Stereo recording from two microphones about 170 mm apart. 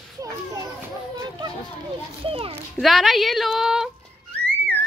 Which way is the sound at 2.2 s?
35° right (ahead or behind).